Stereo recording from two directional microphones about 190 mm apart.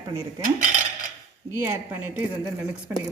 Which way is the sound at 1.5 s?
15° right (ahead or behind).